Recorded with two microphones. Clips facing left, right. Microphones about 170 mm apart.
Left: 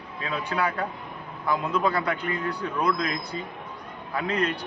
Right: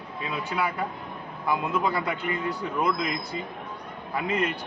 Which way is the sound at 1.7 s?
20° right (ahead or behind).